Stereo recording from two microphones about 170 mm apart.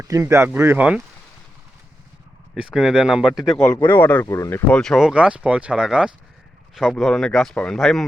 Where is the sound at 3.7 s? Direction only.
10° left (ahead or behind).